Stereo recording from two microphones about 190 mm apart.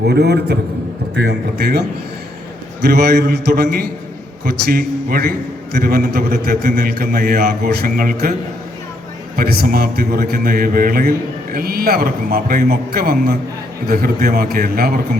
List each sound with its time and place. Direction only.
0.1 s a man's voice: 60° right (ahead or behind)
2.8 s a man's voice: 60° right (ahead or behind)